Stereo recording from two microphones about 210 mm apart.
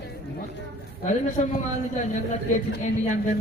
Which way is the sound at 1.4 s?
35° left (ahead or behind).